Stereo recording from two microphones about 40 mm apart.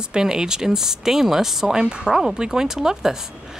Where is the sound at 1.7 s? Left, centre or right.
Right.